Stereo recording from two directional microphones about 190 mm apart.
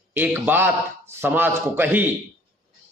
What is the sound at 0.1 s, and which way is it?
A man's voice, 10° right (ahead or behind).